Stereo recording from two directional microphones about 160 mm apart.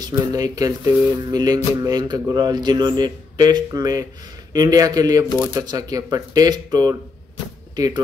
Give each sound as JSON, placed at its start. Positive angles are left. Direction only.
{"t": 0.0, "sound": "music", "side_deg": -20}
{"t": 7.7, "sound": "speech", "side_deg": -25}